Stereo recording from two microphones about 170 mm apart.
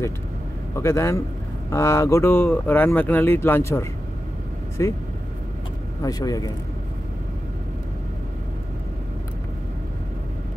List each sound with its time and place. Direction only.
0.7 s speech: 15° left (ahead or behind)
6.0 s a man's voice: 20° left (ahead or behind)